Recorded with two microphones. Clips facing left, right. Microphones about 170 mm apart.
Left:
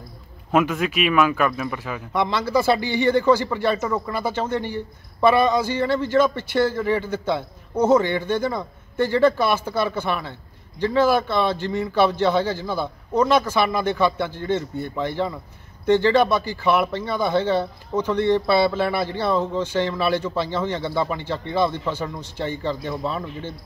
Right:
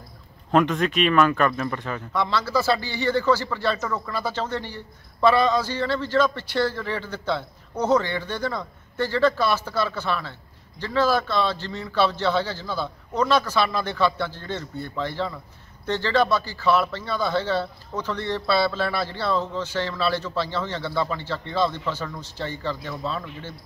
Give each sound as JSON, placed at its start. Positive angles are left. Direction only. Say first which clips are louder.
{"t": 0.5, "sound": "speech", "louder": "even", "side_deg": 5}
{"t": 2.1, "sound": "a man's voice", "louder": "left 3 dB", "side_deg": 15}